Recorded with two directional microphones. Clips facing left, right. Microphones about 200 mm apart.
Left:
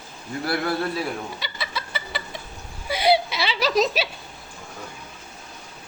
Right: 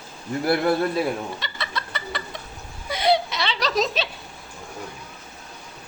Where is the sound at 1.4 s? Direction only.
5° left (ahead or behind).